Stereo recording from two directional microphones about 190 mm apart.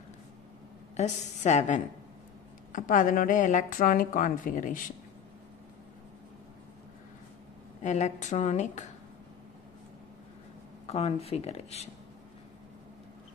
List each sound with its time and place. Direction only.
0.9 s a woman's voice: 35° left (ahead or behind)
7.8 s speech: 40° left (ahead or behind)
10.9 s speech: 35° left (ahead or behind)